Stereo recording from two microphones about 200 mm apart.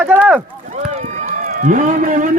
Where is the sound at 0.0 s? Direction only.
5° right (ahead or behind).